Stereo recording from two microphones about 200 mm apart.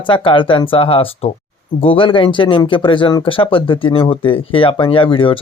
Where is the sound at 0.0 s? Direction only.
25° left (ahead or behind).